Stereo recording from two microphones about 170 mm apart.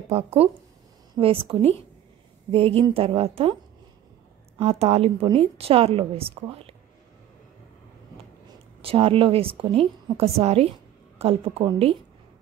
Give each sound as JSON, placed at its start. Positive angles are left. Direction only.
{"t": 0.1, "sound": "a woman's voice", "side_deg": -35}
{"t": 4.6, "sound": "a woman's voice", "side_deg": -35}
{"t": 8.8, "sound": "a woman's voice", "side_deg": -30}